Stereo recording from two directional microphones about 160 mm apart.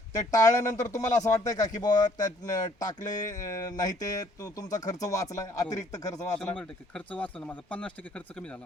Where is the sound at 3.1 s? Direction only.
50° left (ahead or behind).